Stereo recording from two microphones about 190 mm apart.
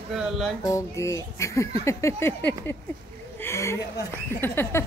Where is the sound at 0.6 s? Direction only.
15° left (ahead or behind).